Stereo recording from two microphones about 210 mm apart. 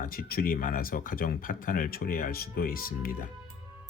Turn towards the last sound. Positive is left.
turn(degrees=45)  # may be behind; listen again after turning